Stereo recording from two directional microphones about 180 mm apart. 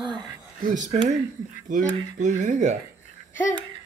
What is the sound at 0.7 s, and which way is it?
Speech, 45° right (ahead or behind).